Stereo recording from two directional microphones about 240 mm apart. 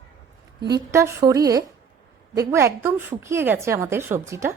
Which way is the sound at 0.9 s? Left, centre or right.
Centre.